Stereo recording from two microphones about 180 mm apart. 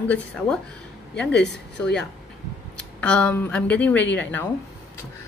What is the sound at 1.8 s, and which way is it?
A woman's voice, 5° left (ahead or behind).